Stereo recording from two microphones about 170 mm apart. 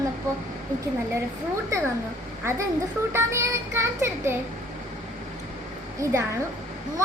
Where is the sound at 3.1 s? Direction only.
15° right (ahead or behind).